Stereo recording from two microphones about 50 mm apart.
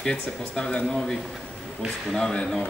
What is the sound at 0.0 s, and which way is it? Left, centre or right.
Speech, centre.